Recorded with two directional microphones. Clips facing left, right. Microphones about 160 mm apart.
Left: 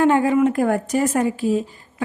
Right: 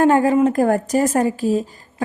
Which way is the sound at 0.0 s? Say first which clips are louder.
Right 2 dB; 40° right (ahead or behind).